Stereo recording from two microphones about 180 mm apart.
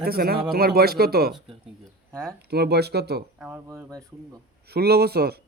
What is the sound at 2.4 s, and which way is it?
Speech, 65° right (ahead or behind).